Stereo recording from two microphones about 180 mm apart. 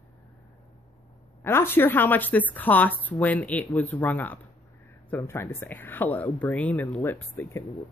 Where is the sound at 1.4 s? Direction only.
10° left (ahead or behind).